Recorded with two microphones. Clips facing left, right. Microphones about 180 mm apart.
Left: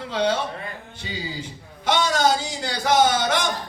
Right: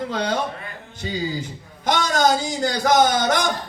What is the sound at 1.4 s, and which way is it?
A man's voice, 40° right (ahead or behind).